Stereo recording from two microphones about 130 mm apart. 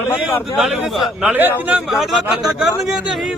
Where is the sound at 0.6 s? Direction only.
5° right (ahead or behind).